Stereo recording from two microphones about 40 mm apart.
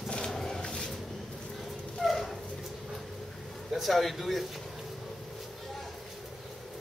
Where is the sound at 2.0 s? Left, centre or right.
Centre.